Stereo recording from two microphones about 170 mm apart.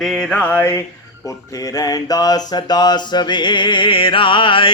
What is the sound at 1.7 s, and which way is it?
Mantra, 20° left (ahead or behind).